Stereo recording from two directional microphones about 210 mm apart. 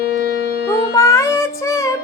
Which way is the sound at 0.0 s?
45° left (ahead or behind).